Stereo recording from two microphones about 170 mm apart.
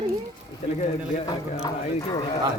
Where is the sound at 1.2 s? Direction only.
20° left (ahead or behind).